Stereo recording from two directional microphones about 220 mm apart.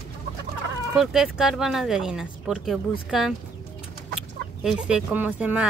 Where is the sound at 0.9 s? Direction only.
Centre (ahead or behind).